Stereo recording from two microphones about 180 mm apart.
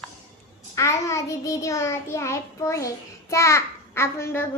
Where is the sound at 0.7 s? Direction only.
15° left (ahead or behind).